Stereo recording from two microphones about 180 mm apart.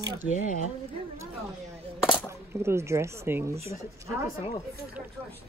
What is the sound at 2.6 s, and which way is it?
Speech, 15° right (ahead or behind).